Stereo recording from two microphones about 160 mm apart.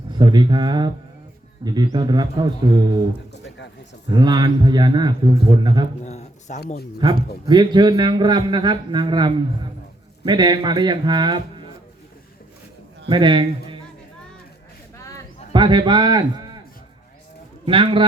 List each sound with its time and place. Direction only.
0.1 s a man's voice: 30° right (ahead or behind)
4.1 s a man's voice: 25° right (ahead or behind)
6.0 s a sound: 45° left (ahead or behind)
7.0 s a man's voice: 30° right (ahead or behind)
13.1 s a man's voice: 30° right (ahead or behind)
14.9 s a sound: 20° left (ahead or behind)
15.5 s a man's voice: 30° right (ahead or behind)
17.7 s a man's voice: 30° right (ahead or behind)